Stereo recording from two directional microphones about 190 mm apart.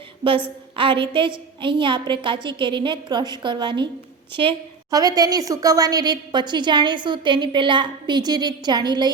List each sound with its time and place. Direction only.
0.8 s a woman's voice: 25° right (ahead or behind)